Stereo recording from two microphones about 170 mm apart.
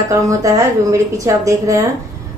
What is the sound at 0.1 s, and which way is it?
A woman's voice, 20° right (ahead or behind).